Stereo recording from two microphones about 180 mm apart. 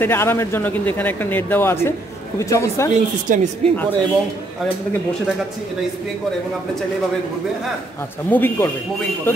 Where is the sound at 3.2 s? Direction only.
45° right (ahead or behind).